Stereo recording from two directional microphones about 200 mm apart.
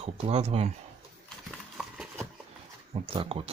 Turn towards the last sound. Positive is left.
turn(degrees=-30)  # may be behind; listen again after turning